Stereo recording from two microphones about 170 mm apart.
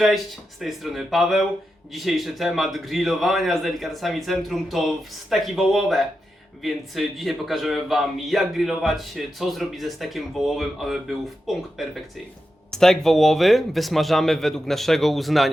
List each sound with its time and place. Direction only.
0.6 s a man's voice: centre (ahead or behind)